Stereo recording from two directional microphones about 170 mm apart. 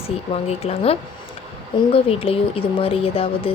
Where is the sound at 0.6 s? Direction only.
35° left (ahead or behind).